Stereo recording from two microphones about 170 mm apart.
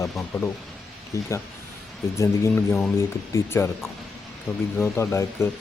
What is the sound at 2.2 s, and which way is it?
Speech, 15° left (ahead or behind).